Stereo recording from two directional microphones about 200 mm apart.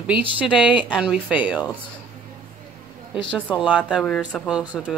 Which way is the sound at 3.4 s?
5° right (ahead or behind).